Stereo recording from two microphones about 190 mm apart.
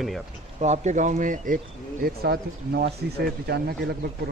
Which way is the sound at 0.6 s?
35° right (ahead or behind).